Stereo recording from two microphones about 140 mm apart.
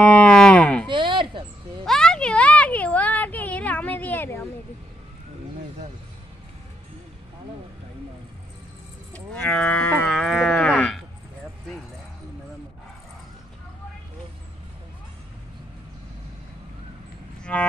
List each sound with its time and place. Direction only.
0.0 s cattle: 10° left (ahead or behind)
0.8 s a sound: 35° right (ahead or behind)
1.9 s a sound: 5° left (ahead or behind)
9.1 s livestock: 10° left (ahead or behind)
10.1 s livestock: centre (ahead or behind)
17.4 s vehicle: 10° left (ahead or behind)